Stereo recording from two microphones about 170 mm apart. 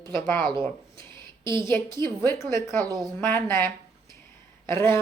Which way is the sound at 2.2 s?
15° left (ahead or behind).